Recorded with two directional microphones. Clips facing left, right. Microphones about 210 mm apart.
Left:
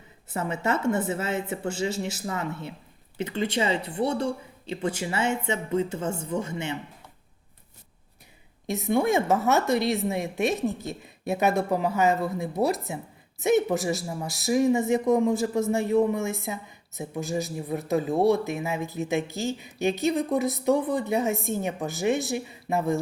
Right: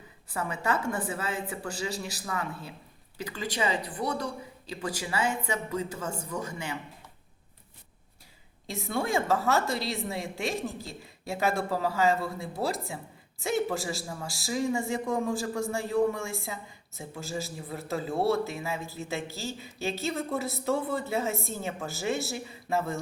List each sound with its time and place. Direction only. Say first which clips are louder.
0.3 s a woman's voice: left 3 dB; 25° left (ahead or behind)
8.6 s a woman's voice: left 7 dB; 20° left (ahead or behind)